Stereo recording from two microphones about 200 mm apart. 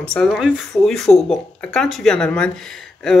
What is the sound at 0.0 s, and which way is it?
Speech, 5° left (ahead or behind).